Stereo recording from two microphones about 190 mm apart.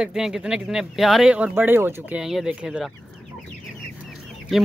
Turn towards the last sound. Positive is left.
turn(degrees=0)  # may be behind; listen again after turning